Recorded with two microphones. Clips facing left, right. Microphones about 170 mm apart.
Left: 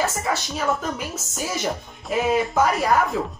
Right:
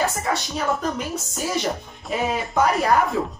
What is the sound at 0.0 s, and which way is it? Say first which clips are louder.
Speech: right 1 dB; 5° left (ahead or behind).